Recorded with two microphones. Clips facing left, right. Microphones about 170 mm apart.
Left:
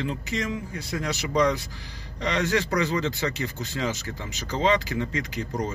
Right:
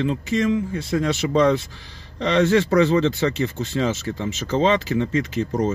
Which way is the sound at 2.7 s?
25° right (ahead or behind).